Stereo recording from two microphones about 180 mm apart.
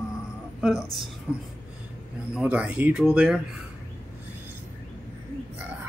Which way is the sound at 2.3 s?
5° right (ahead or behind).